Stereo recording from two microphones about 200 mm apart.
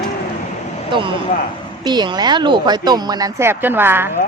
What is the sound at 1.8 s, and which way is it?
Speech, 20° right (ahead or behind).